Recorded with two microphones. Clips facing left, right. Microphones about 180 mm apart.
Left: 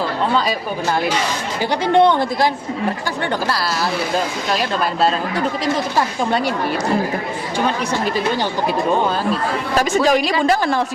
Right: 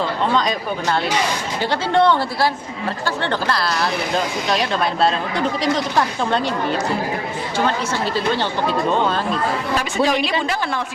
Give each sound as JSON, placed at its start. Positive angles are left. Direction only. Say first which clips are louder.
{"t": 0.3, "sound": "a woman's voice", "louder": "left 1 dB", "side_deg": 5}
{"t": 1.7, "sound": "a woman's voice", "louder": "left 3 dB", "side_deg": 20}
{"t": 8.0, "sound": "a woman's voice", "louder": "even", "side_deg": 15}
{"t": 9.7, "sound": "a woman's voice", "louder": "left 5 dB", "side_deg": 45}